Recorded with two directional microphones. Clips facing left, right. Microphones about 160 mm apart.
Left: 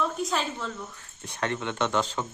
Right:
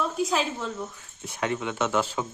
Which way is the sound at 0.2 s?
5° right (ahead or behind).